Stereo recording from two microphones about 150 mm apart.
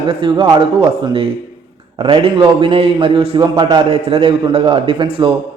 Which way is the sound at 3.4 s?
25° right (ahead or behind).